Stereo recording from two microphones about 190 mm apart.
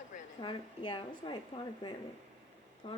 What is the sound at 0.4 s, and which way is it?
Speech, 25° left (ahead or behind).